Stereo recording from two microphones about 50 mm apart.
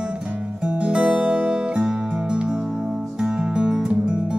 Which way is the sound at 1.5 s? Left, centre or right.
Centre.